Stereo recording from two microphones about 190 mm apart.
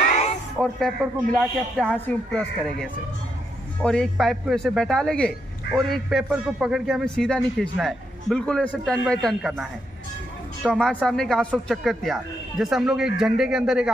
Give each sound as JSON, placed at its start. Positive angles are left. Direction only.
{"t": 0.0, "sound": "music", "side_deg": 35}
{"t": 0.6, "sound": "speech", "side_deg": 0}